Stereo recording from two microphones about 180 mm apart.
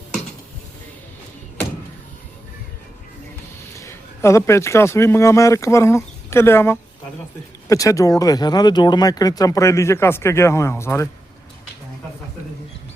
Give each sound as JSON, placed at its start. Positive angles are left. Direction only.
{"t": 3.8, "sound": "a man's voice", "side_deg": 15}